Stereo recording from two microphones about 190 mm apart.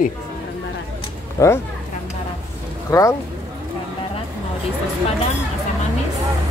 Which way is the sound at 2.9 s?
15° left (ahead or behind).